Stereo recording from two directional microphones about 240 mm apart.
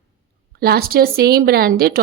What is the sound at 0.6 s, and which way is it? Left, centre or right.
A woman's voice, right.